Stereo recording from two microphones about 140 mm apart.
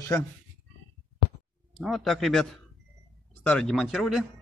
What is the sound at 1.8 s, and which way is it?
Speech, centre (ahead or behind).